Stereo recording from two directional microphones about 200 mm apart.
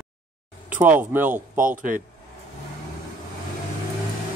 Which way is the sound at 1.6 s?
40° right (ahead or behind).